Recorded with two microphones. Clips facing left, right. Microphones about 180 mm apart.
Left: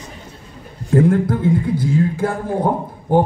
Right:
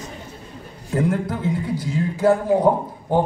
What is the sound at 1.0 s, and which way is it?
A man's voice, 50° left (ahead or behind).